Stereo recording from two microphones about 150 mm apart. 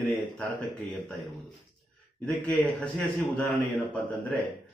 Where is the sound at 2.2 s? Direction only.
10° left (ahead or behind).